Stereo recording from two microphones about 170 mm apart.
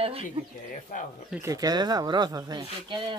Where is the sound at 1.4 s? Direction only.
20° right (ahead or behind).